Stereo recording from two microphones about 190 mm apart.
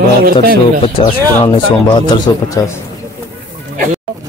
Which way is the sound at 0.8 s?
30° left (ahead or behind).